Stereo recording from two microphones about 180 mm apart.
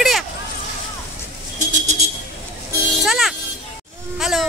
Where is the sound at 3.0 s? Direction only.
Centre (ahead or behind).